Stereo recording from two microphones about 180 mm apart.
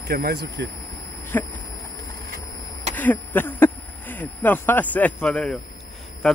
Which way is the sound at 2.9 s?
10° left (ahead or behind).